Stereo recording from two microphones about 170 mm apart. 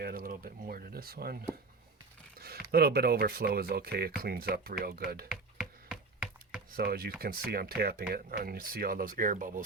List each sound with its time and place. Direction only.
0.0 s speech: 60° right (ahead or behind)
5.3 s a sound: 5° right (ahead or behind)
6.7 s speech: 65° right (ahead or behind)